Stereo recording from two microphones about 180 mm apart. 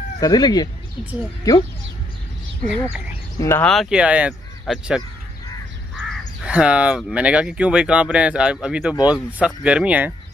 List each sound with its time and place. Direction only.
0.2 s speech: 20° left (ahead or behind)
3.3 s speech: 15° left (ahead or behind)
3.6 s speech: centre (ahead or behind)